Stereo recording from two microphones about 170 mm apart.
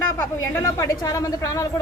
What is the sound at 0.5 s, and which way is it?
Speech, 15° left (ahead or behind).